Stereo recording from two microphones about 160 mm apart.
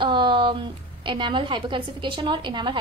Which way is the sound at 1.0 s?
30° right (ahead or behind).